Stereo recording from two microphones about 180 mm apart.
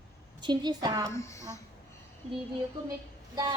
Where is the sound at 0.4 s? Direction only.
25° right (ahead or behind).